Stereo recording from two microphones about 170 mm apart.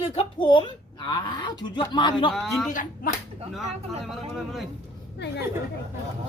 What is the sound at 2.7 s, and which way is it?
Speech, 50° left (ahead or behind).